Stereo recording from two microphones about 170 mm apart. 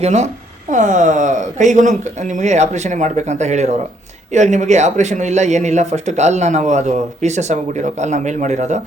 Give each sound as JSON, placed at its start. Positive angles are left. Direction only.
{"t": 0.0, "sound": "speech", "side_deg": -40}